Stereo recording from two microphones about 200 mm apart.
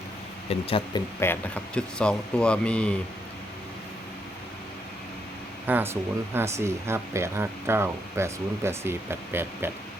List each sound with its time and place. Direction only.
0.5 s speech: 30° left (ahead or behind)
1.2 s speech: 10° left (ahead or behind)
5.6 s speech: 10° right (ahead or behind)